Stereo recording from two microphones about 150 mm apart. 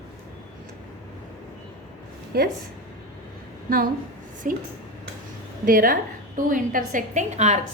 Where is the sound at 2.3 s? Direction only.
90° right.